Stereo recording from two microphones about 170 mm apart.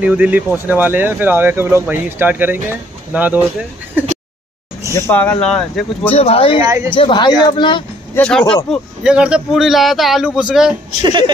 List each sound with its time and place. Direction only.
0.0 s speech: 10° right (ahead or behind)
4.9 s speech: 15° left (ahead or behind)
6.1 s speech: 35° left (ahead or behind)
6.6 s a woman's voice: 20° right (ahead or behind)
6.9 s speech: 30° left (ahead or behind)
8.1 s speech: 5° left (ahead or behind)
8.6 s speech: 5° right (ahead or behind)
11.0 s a woman's voice: 30° right (ahead or behind)